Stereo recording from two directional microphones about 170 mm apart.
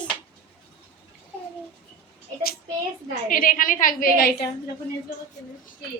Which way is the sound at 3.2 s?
55° left (ahead or behind).